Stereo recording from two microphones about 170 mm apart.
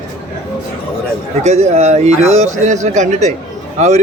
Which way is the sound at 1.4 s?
40° right (ahead or behind).